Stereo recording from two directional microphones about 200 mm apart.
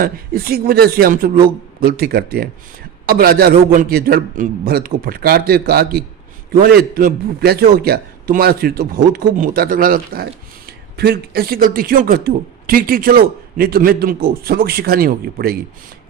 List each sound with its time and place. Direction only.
0.0 s speech: 45° right (ahead or behind)